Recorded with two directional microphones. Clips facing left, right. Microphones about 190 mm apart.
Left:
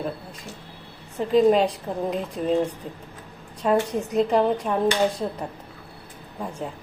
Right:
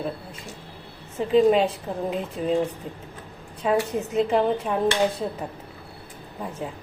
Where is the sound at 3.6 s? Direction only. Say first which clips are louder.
Left 1 dB; 5° right (ahead or behind).